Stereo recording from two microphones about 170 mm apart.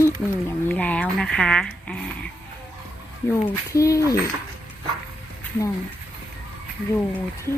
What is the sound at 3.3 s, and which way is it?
Speech, 15° left (ahead or behind).